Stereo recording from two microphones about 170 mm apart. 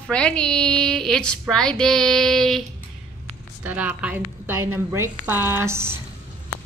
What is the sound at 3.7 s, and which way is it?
A woman's voice, 10° right (ahead or behind).